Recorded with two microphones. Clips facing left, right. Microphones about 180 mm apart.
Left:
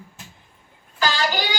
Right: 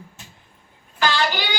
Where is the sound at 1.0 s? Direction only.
40° left (ahead or behind).